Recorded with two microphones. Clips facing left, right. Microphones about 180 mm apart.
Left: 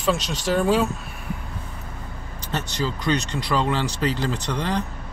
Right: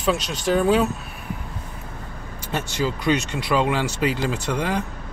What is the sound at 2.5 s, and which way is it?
Speech, 10° right (ahead or behind).